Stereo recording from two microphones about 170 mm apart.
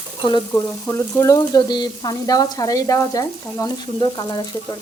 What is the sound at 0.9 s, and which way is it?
Frying, 15° left (ahead or behind).